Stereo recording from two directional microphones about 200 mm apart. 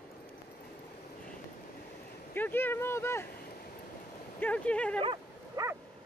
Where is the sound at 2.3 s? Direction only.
10° left (ahead or behind).